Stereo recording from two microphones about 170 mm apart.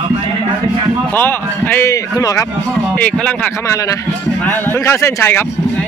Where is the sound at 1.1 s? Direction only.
10° left (ahead or behind).